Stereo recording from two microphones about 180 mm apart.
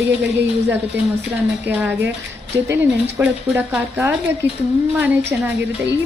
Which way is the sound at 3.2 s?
5° right (ahead or behind).